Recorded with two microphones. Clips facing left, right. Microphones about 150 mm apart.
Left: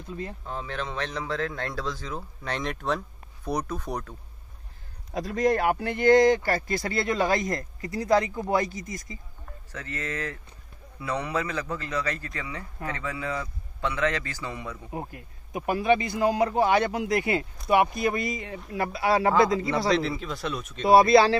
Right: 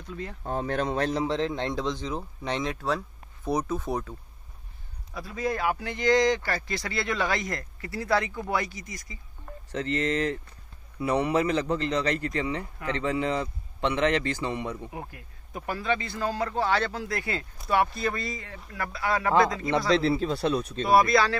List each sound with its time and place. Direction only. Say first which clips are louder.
0.4 s a man's voice: right 5 dB; 50° right (ahead or behind); by 4.2 s 5° right (ahead or behind)
5.1 s speech: left 6 dB; 80° left; by 6.8 s 45° left (ahead or behind)
7.1 s speech: left 4 dB; 20° left (ahead or behind)
8.9 s speech: left 5 dB; 45° left (ahead or behind)
9.8 s a man's voice: right 7 dB; 25° right (ahead or behind)
14.9 s speech: left 4 dB; 25° left (ahead or behind)
15.5 s speech: left 6 dB; 15° left (ahead or behind)
19.9 s speech: right 2 dB; 30° right (ahead or behind)
20.8 s speech: left 5 dB; 30° left (ahead or behind)